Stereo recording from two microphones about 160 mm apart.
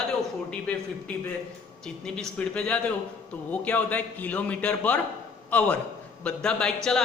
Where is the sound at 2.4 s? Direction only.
5° left (ahead or behind).